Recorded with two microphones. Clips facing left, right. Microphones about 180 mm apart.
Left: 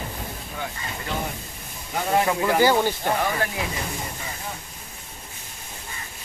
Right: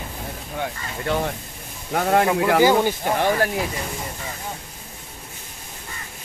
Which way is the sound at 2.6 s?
15° right (ahead or behind).